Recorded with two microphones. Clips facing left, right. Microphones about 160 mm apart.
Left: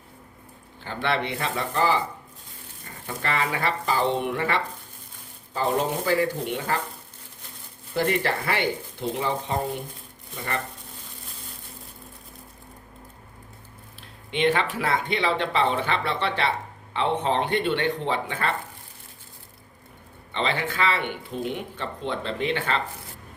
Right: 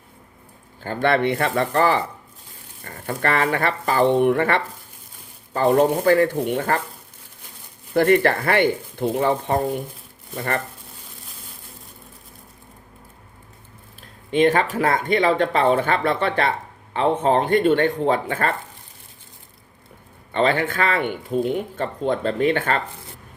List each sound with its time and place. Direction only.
0.9 s speech: 50° right (ahead or behind)
7.9 s speech: 55° right (ahead or behind)
14.3 s speech: 45° right (ahead or behind)
20.3 s speech: 50° right (ahead or behind)